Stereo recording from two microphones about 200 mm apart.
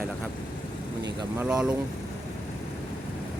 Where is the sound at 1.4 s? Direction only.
5° right (ahead or behind).